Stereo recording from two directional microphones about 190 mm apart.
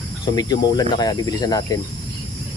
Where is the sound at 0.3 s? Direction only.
20° left (ahead or behind).